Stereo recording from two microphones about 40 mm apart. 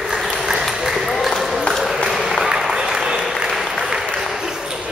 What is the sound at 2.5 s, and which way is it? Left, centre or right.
Applause, centre.